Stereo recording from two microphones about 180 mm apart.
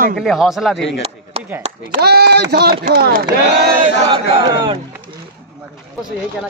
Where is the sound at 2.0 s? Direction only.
60° right (ahead or behind).